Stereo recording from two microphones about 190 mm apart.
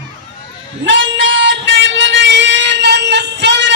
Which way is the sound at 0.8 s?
85° right.